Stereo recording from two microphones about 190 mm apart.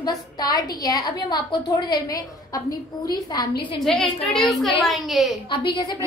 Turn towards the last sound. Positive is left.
turn(degrees=25)  # may be behind; listen again after turning